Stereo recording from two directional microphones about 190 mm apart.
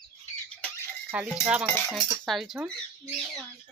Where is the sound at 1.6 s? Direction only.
10° left (ahead or behind).